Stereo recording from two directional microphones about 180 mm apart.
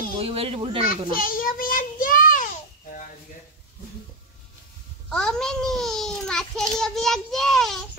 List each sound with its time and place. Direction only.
0.2 s a child's voice: 35° right (ahead or behind)
1.1 s child singing: 50° left (ahead or behind)
5.1 s a child's voice: 5° left (ahead or behind)